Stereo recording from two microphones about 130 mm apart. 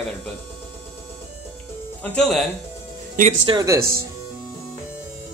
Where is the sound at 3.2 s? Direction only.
70° right (ahead or behind).